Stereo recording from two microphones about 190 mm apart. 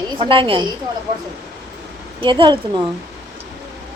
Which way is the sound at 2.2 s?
25° right (ahead or behind).